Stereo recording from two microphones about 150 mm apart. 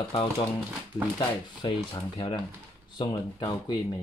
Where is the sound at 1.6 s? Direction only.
35° left (ahead or behind).